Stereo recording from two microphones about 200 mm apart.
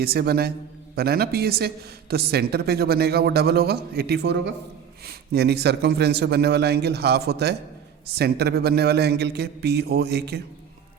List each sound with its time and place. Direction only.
0.0 s a man's voice: 50° right (ahead or behind)